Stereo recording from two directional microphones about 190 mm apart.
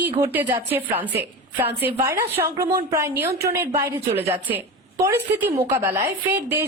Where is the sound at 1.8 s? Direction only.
15° right (ahead or behind).